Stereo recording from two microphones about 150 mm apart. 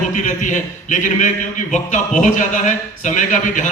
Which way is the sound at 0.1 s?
55° left (ahead or behind).